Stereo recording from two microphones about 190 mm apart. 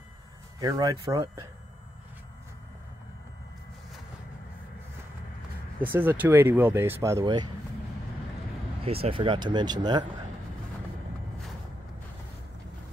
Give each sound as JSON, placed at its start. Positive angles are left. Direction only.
{"t": 0.6, "sound": "speech", "side_deg": -20}
{"t": 5.9, "sound": "speech", "side_deg": -10}
{"t": 8.8, "sound": "speech", "side_deg": -30}